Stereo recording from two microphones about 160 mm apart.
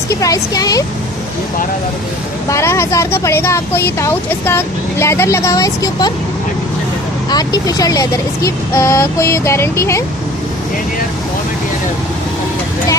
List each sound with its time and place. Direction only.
0.1 s speech: 20° left (ahead or behind)
2.5 s speech: 15° left (ahead or behind)
7.3 s speech: 25° left (ahead or behind)